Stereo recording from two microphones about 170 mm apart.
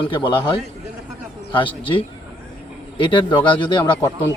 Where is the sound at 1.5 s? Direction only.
30° left (ahead or behind).